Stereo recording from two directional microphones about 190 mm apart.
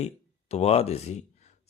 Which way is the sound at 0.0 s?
35° left (ahead or behind).